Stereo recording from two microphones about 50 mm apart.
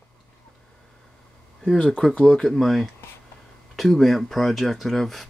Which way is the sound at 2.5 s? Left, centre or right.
Centre.